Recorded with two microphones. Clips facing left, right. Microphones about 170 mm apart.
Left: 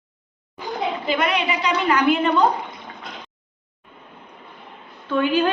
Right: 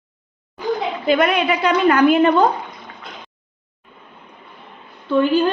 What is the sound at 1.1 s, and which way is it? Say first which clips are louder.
A woman's voice: right 7 dB; 50° right (ahead or behind).